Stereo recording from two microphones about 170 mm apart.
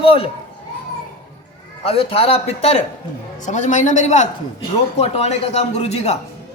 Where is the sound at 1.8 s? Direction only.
35° left (ahead or behind).